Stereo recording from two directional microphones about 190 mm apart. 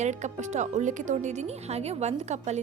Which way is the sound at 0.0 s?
40° right (ahead or behind).